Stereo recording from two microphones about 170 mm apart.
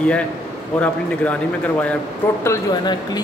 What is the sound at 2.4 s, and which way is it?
Speech, 20° left (ahead or behind).